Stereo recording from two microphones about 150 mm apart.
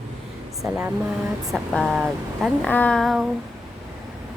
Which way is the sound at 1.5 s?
5° left (ahead or behind).